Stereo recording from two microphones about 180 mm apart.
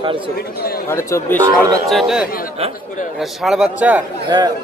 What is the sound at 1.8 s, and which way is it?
Speech, centre (ahead or behind).